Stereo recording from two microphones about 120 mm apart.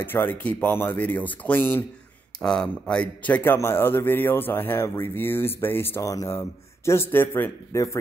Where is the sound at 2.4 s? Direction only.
5° left (ahead or behind).